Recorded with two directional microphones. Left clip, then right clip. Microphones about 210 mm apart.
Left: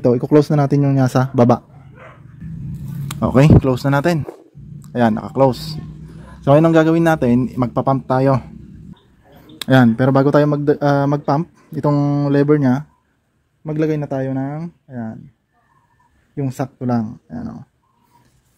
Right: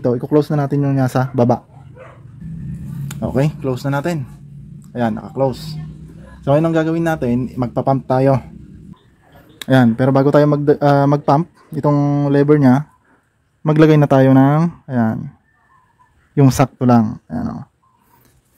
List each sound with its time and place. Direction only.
0.0 s speech: 10° left (ahead or behind)
3.1 s speech: 15° left (ahead or behind); by 8.5 s centre (ahead or behind)
9.6 s speech: 5° left (ahead or behind)
13.7 s speech: 20° right (ahead or behind)
16.5 s speech: 15° right (ahead or behind)